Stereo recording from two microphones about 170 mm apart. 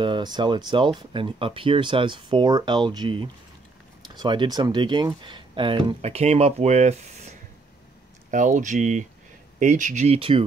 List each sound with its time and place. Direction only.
0.0 s speech: 25° right (ahead or behind)